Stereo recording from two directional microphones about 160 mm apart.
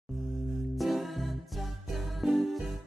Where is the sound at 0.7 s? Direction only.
Centre (ahead or behind).